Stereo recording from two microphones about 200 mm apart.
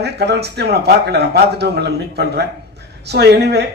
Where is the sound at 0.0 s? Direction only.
55° right (ahead or behind).